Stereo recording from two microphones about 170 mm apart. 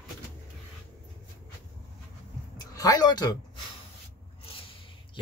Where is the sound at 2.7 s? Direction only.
20° left (ahead or behind).